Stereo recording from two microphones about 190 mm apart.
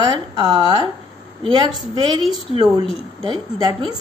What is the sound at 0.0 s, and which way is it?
A woman's voice, 25° right (ahead or behind).